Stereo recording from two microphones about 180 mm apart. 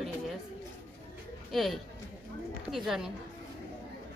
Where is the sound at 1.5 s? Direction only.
Centre (ahead or behind).